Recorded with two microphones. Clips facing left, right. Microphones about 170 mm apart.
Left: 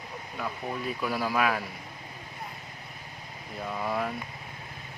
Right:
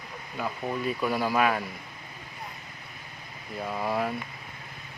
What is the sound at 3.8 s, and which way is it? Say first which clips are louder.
Speech: right 2 dB; 5° right (ahead or behind).